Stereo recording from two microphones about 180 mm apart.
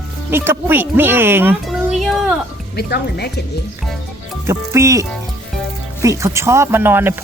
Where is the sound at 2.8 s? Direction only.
65° left (ahead or behind).